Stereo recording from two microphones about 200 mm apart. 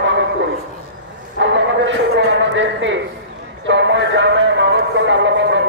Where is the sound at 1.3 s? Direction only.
65° right (ahead or behind).